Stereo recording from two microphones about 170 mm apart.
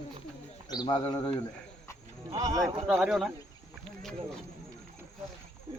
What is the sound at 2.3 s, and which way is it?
Speech, 20° right (ahead or behind).